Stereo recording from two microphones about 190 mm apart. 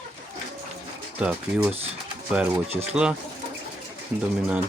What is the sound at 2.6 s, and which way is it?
Speech, 35° right (ahead or behind).